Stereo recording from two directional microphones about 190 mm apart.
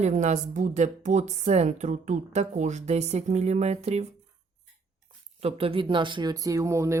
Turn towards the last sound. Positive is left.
turn(degrees=-15)  # may be behind; listen again after turning